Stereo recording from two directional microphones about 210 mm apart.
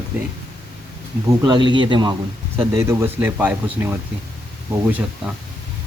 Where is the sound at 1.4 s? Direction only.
20° right (ahead or behind); by 5.3 s 5° right (ahead or behind).